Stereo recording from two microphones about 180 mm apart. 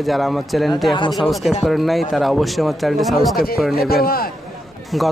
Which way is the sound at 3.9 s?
60° left (ahead or behind).